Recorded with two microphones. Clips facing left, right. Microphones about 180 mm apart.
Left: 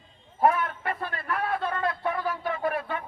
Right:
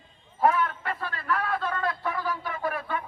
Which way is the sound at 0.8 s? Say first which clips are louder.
Left 1 dB; 25° left (ahead or behind).